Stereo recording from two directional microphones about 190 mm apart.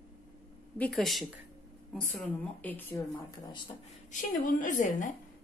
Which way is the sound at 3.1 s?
25° left (ahead or behind).